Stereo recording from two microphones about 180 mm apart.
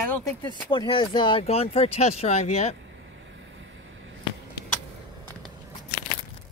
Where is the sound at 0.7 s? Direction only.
25° left (ahead or behind).